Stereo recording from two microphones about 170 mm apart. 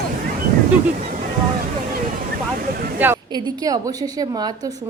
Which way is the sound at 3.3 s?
25° right (ahead or behind).